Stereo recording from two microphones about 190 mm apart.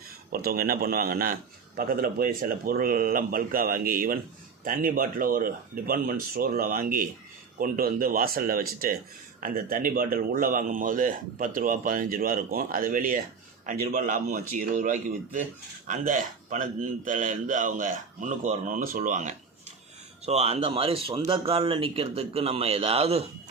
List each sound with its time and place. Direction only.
0.3 s a man's voice: 50° right (ahead or behind); by 23.2 s 30° right (ahead or behind)